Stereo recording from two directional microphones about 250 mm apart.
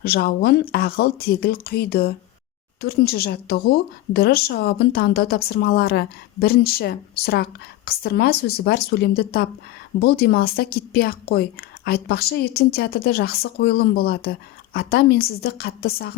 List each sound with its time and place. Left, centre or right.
0.0 s speech: left